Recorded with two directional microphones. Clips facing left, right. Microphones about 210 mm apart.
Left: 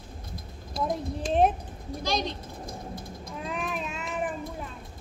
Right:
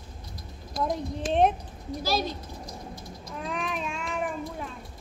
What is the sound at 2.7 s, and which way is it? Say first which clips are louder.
Vehicle: left 2 dB; 50° left (ahead or behind).